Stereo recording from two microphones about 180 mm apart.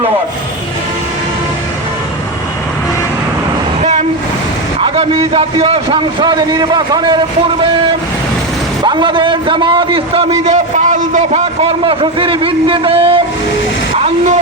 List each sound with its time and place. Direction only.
4.8 s a man's voice: 30° right (ahead or behind)
8.8 s a man's voice: 25° right (ahead or behind)
10.4 s a man's voice: 40° right (ahead or behind)